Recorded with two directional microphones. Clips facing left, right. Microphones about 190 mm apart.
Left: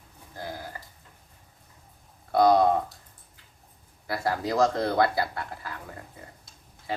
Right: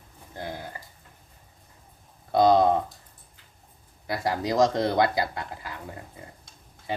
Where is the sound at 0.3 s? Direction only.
20° right (ahead or behind).